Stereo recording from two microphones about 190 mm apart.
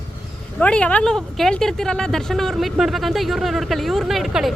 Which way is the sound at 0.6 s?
5° left (ahead or behind).